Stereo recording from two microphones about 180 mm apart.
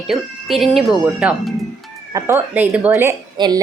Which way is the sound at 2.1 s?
15° right (ahead or behind).